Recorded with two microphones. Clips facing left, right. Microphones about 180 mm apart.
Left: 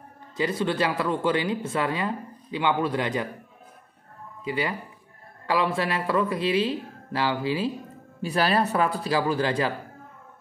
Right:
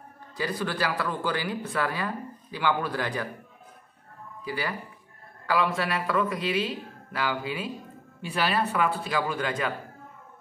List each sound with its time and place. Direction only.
0.4 s speech: 25° left (ahead or behind)
4.4 s speech: 20° left (ahead or behind)